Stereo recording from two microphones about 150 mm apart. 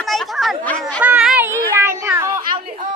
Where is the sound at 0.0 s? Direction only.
Centre (ahead or behind).